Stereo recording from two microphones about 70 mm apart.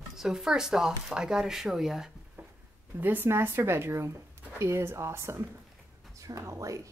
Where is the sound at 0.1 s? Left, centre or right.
Centre.